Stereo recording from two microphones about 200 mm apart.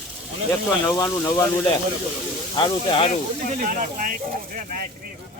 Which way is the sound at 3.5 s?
40° right (ahead or behind).